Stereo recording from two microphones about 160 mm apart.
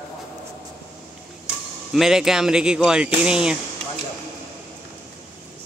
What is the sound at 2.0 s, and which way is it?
Speech, 5° right (ahead or behind).